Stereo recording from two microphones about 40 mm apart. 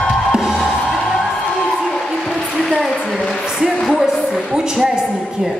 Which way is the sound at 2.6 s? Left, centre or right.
Centre.